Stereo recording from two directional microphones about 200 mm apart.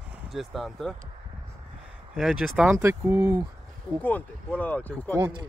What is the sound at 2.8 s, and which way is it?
Speech, 15° right (ahead or behind).